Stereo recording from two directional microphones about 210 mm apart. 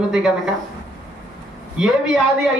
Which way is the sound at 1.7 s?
Centre (ahead or behind).